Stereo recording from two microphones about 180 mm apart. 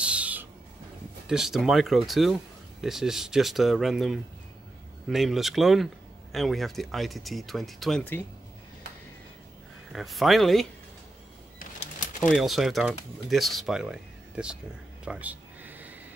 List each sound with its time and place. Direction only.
0.0 s owl: 5° right (ahead or behind)
1.2 s speech: 5° right (ahead or behind)
9.9 s speech: centre (ahead or behind)
11.8 s pigeon: 45° left (ahead or behind)
12.2 s speech: centre (ahead or behind)
15.0 s a sound: 10° right (ahead or behind)